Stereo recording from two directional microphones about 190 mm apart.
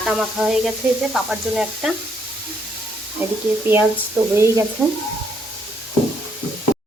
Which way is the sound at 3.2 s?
10° right (ahead or behind).